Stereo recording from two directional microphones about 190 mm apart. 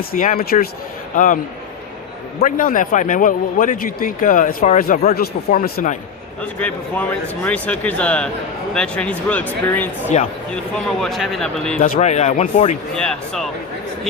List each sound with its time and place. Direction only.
0.1 s a man's voice: 45° left (ahead or behind)
2.4 s a man's voice: 45° left (ahead or behind)
6.6 s speech: 10° left (ahead or behind)
11.0 s speech: centre (ahead or behind)
11.8 s speech: 35° left (ahead or behind)
12.9 s speech: 5° left (ahead or behind)